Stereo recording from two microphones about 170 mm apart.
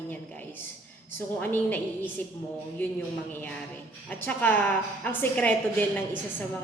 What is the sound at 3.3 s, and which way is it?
A woman's voice, 10° left (ahead or behind).